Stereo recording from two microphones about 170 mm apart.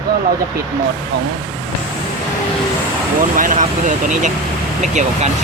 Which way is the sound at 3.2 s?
50° right (ahead or behind).